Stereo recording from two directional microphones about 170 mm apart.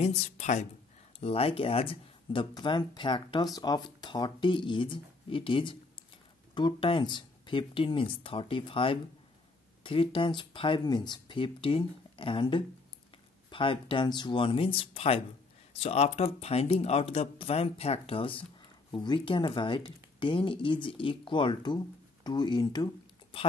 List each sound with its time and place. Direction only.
0.0 s speech: 40° left (ahead or behind)